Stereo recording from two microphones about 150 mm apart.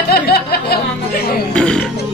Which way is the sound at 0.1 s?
90° left.